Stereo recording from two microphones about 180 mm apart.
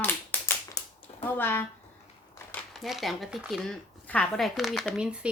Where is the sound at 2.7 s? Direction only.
Centre (ahead or behind).